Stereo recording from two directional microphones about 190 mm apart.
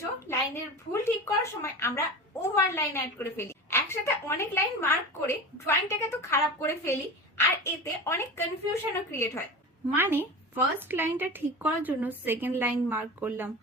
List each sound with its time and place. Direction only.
0.3 s a woman's voice: 15° left (ahead or behind)
9.9 s a woman's voice: 10° right (ahead or behind)